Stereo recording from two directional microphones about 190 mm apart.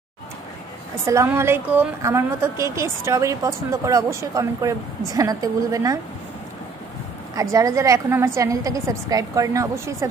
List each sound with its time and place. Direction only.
1.0 s a woman's voice: 15° right (ahead or behind)
7.5 s a woman's voice: 15° right (ahead or behind)